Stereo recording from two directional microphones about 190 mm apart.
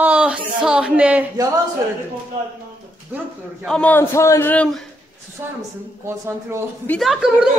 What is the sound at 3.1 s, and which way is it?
A man's voice, centre (ahead or behind).